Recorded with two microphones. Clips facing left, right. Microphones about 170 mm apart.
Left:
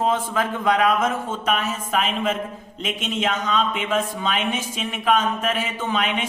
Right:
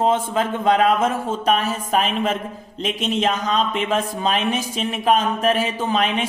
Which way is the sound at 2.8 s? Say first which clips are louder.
Right 4 dB; 35° right (ahead or behind).